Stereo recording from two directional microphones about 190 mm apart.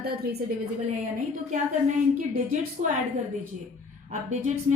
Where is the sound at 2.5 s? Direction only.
40° right (ahead or behind).